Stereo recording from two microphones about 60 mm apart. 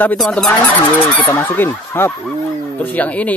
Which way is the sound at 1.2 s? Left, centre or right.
Left.